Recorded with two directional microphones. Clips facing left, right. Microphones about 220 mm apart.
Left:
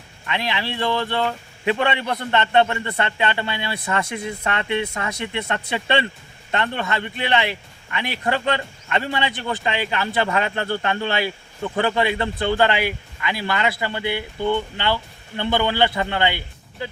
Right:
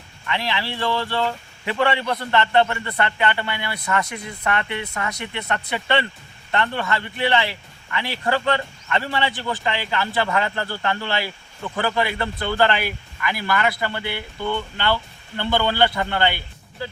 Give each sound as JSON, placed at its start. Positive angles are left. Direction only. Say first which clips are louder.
{"t": 0.3, "sound": "a man's voice", "louder": "even", "side_deg": 20}
{"t": 15.4, "sound": "a man's voice", "louder": "even", "side_deg": 20}